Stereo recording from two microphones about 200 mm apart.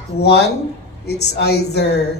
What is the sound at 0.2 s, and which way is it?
Speech, 55° left (ahead or behind).